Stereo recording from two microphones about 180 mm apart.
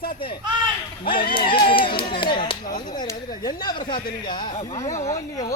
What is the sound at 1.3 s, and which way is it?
Speech, 30° left (ahead or behind).